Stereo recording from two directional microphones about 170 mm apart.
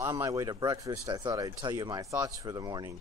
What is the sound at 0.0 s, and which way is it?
Speech, 20° right (ahead or behind).